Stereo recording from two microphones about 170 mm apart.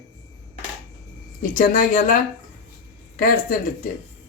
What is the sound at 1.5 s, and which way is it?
Speech, 50° left (ahead or behind).